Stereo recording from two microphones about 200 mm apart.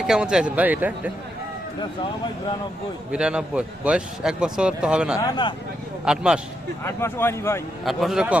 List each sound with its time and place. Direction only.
0.0 s a man's voice: 5° right (ahead or behind)
3.1 s a man's voice: 5° right (ahead or behind)
5.1 s speech: 20° left (ahead or behind)
6.1 s a man's voice: 5° right (ahead or behind)
6.8 s speech: 10° left (ahead or behind)
7.9 s a man's voice: centre (ahead or behind)